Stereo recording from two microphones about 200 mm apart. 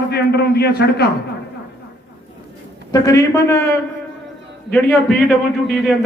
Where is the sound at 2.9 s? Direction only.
15° left (ahead or behind).